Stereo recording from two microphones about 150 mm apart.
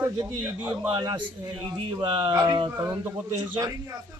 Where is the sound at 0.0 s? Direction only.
15° right (ahead or behind).